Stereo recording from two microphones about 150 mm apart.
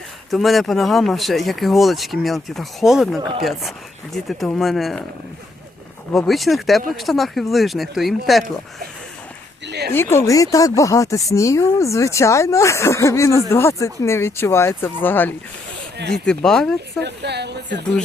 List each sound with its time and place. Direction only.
0.3 s speech: centre (ahead or behind)
6.1 s speech: centre (ahead or behind)
9.9 s speech: 15° left (ahead or behind)
17.1 s a woman's voice: 90° right